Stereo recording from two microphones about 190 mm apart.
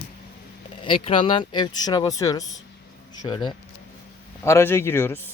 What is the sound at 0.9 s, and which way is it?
Speech, 30° left (ahead or behind).